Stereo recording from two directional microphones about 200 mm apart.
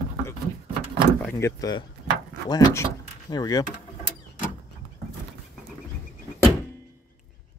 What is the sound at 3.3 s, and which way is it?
Speech, 20° left (ahead or behind).